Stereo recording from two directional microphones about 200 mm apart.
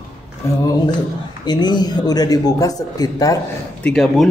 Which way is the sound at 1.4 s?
20° left (ahead or behind).